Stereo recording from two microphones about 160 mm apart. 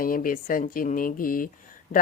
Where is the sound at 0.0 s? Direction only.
60° left (ahead or behind).